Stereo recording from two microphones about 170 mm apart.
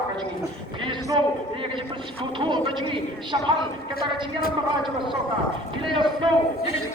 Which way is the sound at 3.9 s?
60° left (ahead or behind).